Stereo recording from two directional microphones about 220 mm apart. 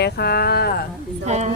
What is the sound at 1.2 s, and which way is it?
Speech, 30° right (ahead or behind).